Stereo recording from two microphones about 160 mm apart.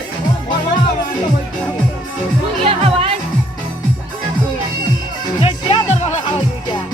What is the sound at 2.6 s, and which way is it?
Music, 35° right (ahead or behind).